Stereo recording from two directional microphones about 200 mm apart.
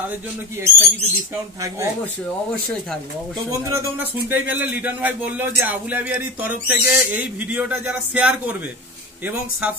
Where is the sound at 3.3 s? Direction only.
10° right (ahead or behind).